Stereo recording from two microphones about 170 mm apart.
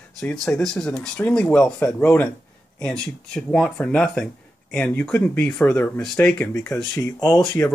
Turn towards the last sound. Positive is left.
turn(degrees=15)  # may be behind; listen again after turning